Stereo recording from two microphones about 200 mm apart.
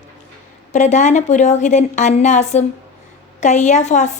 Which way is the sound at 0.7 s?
35° left (ahead or behind).